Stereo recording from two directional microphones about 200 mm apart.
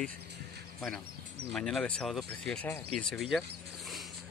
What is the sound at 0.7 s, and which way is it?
Speech, centre (ahead or behind).